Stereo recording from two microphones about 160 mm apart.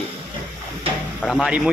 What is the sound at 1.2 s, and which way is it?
Speech, 5° left (ahead or behind).